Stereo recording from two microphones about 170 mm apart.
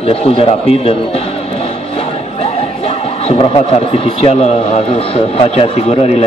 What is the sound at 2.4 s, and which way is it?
Speech, 35° left (ahead or behind).